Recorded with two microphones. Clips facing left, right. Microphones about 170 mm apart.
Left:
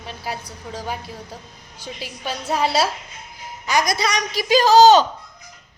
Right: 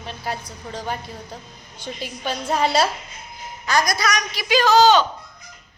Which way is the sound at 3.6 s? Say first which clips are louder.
Even; 20° left (ahead or behind).